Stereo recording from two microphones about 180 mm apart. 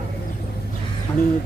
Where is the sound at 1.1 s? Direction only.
15° left (ahead or behind).